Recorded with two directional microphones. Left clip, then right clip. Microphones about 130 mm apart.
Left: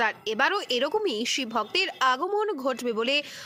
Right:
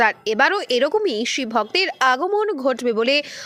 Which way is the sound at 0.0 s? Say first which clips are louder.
Right 8 dB; 35° right (ahead or behind).